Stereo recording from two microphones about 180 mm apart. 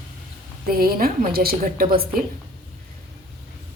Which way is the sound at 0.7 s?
55° right (ahead or behind).